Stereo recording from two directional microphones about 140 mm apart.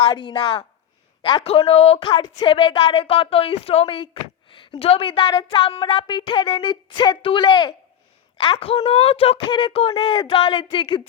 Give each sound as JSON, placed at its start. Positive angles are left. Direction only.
{"t": 0.1, "sound": "a woman's voice", "side_deg": 30}
{"t": 1.5, "sound": "speech", "side_deg": 45}
{"t": 2.1, "sound": "a woman's voice", "side_deg": 30}
{"t": 8.5, "sound": "a woman's voice", "side_deg": 45}